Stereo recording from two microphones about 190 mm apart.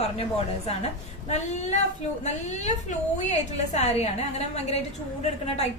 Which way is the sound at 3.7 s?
35° left (ahead or behind).